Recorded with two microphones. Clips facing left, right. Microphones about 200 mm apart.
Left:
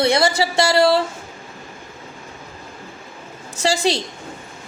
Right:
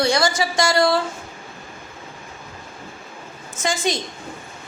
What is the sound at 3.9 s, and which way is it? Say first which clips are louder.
Speech: left 2 dB; 30° left (ahead or behind).